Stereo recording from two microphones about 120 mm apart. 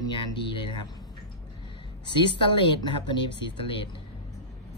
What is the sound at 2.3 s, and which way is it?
A woman's voice, 40° left (ahead or behind).